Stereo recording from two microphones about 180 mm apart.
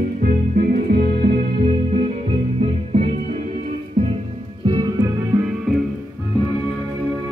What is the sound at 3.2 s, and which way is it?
Music, 50° right (ahead or behind).